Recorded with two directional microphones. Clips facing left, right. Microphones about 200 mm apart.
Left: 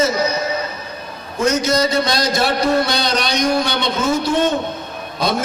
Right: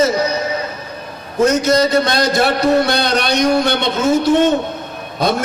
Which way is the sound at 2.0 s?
55° right (ahead or behind).